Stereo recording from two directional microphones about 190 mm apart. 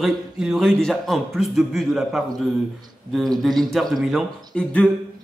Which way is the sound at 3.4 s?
Centre (ahead or behind).